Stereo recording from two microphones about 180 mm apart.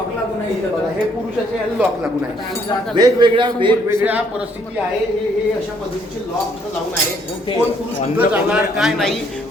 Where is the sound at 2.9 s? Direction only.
25° right (ahead or behind).